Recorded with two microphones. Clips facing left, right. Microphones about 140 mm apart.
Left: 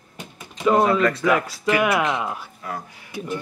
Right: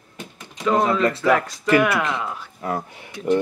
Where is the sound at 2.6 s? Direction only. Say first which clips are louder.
Right 6 dB; 30° right (ahead or behind).